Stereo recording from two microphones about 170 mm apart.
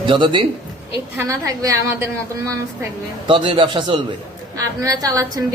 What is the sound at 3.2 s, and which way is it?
Speech, 30° right (ahead or behind).